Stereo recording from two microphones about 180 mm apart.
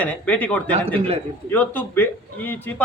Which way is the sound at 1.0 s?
35° right (ahead or behind).